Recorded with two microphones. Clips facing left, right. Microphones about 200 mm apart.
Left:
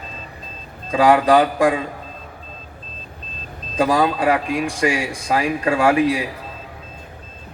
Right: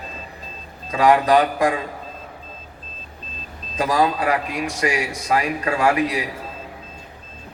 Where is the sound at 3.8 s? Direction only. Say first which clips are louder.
Left 2 dB; 30° left (ahead or behind).